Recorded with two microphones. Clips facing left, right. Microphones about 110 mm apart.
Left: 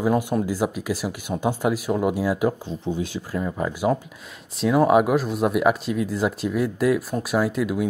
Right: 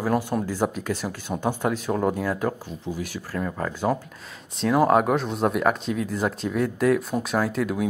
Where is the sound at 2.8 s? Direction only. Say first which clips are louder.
Left 4 dB; 25° left (ahead or behind).